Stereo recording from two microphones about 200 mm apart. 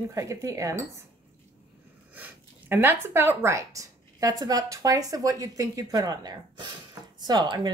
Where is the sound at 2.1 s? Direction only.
10° right (ahead or behind).